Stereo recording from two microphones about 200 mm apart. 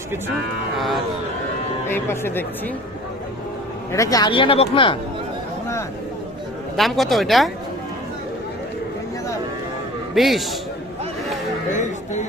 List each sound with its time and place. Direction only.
0.8 s speech: centre (ahead or behind)
1.9 s speech: 10° left (ahead or behind)
3.9 s speech: 15° left (ahead or behind)
6.7 s speech: centre (ahead or behind)
10.2 s speech: centre (ahead or behind)
11.7 s a sound: 35° left (ahead or behind)